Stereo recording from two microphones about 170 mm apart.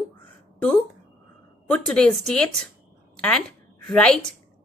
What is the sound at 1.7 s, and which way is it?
Speech, 5° left (ahead or behind).